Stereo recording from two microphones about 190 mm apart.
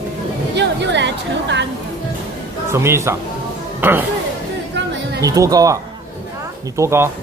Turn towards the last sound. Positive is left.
turn(degrees=-15)  # may be behind; listen again after turning